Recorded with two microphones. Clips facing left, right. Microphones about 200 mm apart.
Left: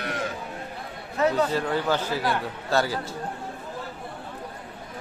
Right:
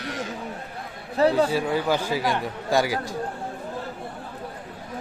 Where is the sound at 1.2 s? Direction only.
30° right (ahead or behind).